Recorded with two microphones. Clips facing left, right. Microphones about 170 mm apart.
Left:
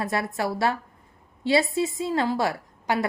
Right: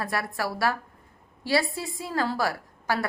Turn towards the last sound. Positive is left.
turn(degrees=20)  # may be behind; listen again after turning